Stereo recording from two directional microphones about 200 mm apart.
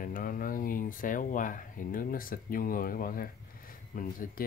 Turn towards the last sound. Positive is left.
turn(degrees=45)  # may be behind; listen again after turning